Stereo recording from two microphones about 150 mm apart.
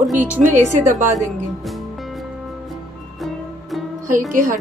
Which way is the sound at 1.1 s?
Centre (ahead or behind).